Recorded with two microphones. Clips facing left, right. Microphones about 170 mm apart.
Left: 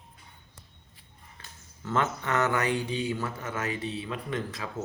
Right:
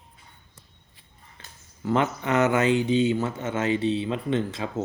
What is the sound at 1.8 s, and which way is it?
Speech, 15° right (ahead or behind).